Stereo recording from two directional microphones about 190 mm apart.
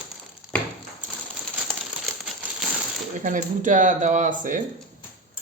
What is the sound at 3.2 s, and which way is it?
Speech, 45° right (ahead or behind).